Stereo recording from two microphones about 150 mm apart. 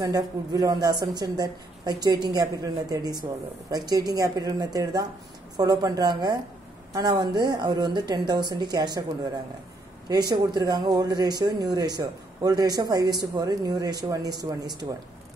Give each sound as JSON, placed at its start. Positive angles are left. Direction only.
{"t": 0.0, "sound": "a woman's voice", "side_deg": -25}
{"t": 10.3, "sound": "a woman's voice", "side_deg": -30}